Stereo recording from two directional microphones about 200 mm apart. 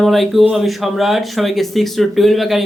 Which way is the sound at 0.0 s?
Centre (ahead or behind).